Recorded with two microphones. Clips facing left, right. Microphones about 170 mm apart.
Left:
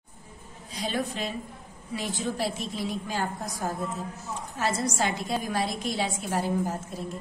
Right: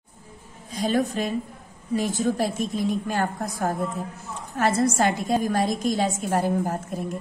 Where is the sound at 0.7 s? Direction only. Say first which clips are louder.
Right 7 dB; 45° right (ahead or behind).